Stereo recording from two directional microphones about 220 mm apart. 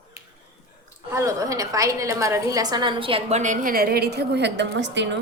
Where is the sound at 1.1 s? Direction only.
15° right (ahead or behind).